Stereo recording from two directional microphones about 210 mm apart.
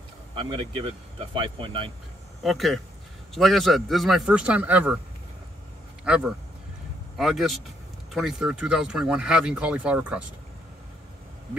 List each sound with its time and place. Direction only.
0.3 s speech: 25° right (ahead or behind)
2.4 s speech: centre (ahead or behind)
6.0 s speech: 5° right (ahead or behind)